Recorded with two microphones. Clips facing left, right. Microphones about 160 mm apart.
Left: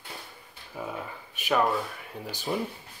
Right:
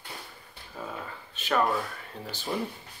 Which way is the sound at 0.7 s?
10° left (ahead or behind).